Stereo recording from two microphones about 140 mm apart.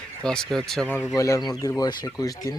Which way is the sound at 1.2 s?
25° left (ahead or behind).